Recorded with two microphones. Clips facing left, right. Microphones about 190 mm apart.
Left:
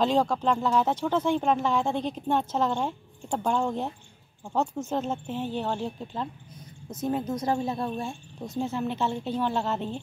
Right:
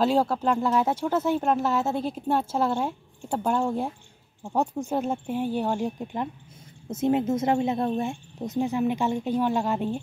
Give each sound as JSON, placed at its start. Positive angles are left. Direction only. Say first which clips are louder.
{"t": 0.0, "sound": "speech", "louder": "right 1 dB", "side_deg": -5}